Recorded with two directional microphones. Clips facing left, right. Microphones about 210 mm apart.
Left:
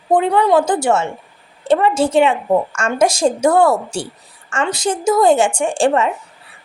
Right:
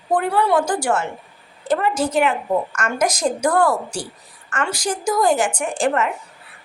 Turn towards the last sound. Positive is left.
turn(degrees=30)  # may be behind; listen again after turning